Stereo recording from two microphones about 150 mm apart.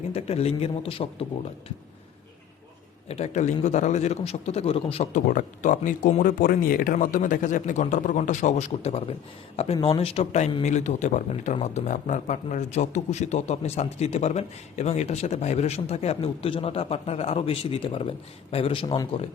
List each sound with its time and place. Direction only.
0.1 s a man's voice: 45° left (ahead or behind)
3.1 s speech: 50° left (ahead or behind)
5.1 s a man's voice: 60° left (ahead or behind); by 19.2 s 35° left (ahead or behind)